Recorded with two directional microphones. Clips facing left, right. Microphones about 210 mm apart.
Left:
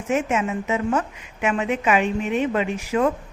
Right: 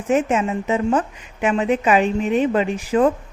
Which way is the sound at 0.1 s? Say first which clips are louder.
Right 4 dB; 35° right (ahead or behind).